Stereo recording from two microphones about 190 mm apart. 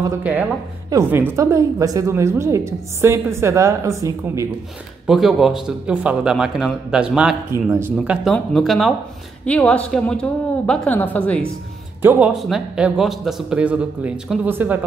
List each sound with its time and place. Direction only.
0.2 s a woman's voice: 10° right (ahead or behind)
5.0 s a woman's voice: centre (ahead or behind)
12.0 s a woman's voice: 10° right (ahead or behind)